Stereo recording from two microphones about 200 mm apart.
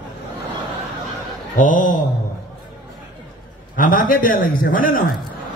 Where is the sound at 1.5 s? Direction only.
40° left (ahead or behind).